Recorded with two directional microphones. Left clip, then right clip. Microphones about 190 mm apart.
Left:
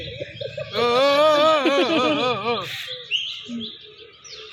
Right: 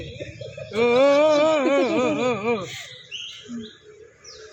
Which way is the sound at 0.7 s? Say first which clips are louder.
Right 1 dB; 50° right (ahead or behind).